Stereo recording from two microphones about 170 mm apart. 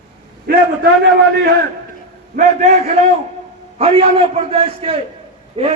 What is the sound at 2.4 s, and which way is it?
Speech, 50° right (ahead or behind).